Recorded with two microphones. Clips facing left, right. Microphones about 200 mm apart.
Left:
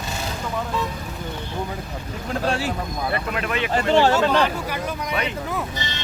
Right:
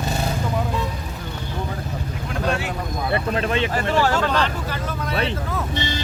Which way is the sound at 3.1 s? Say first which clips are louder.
Right 5 dB; 30° right (ahead or behind).